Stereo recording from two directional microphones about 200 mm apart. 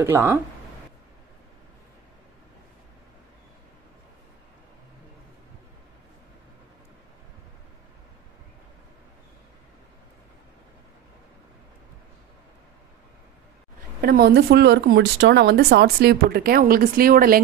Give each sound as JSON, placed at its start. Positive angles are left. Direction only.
{"t": 0.0, "sound": "speech", "side_deg": -10}
{"t": 14.0, "sound": "speech", "side_deg": -50}